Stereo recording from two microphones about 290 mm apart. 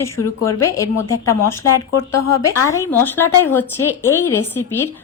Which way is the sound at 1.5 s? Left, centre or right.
Centre.